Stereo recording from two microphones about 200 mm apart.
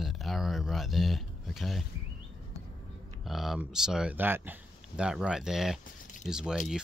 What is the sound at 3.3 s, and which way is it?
Speech, centre (ahead or behind).